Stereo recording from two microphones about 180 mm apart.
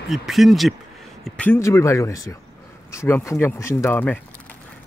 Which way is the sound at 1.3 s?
15° left (ahead or behind).